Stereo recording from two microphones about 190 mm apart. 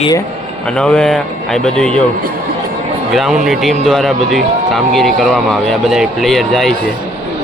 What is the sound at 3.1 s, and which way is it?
A man's voice, centre (ahead or behind).